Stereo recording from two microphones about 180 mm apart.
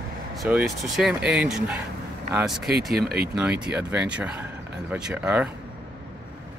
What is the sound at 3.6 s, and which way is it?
Speech, 5° right (ahead or behind).